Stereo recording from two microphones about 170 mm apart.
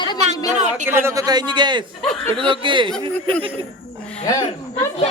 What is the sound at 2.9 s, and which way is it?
Speech, 5° left (ahead or behind).